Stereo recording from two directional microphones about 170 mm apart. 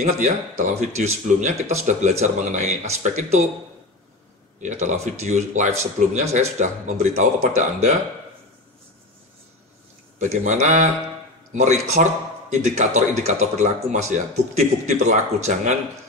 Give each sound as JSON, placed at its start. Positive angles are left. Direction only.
{"t": 0.7, "sound": "a man's voice", "side_deg": -40}
{"t": 4.6, "sound": "a man's voice", "side_deg": -45}
{"t": 10.1, "sound": "a man's voice", "side_deg": -45}